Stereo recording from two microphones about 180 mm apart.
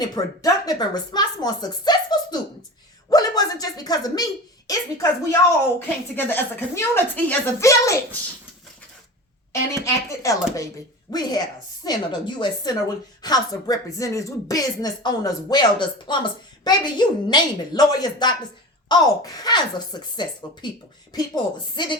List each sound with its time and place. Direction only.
0.0 s speech: 20° left (ahead or behind)
6.1 s speech: 10° left (ahead or behind)
9.5 s speech: 15° left (ahead or behind)